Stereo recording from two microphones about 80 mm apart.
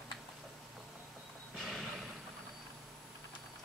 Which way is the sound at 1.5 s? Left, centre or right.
Centre.